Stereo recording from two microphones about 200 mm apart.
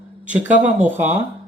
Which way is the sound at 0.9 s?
35° right (ahead or behind).